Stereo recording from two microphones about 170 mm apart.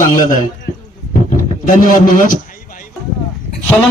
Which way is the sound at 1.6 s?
50° left (ahead or behind).